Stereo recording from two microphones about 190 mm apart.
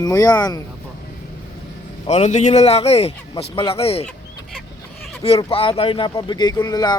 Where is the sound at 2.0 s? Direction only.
35° left (ahead or behind).